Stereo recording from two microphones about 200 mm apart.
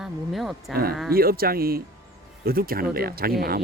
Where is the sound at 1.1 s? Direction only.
50° right (ahead or behind).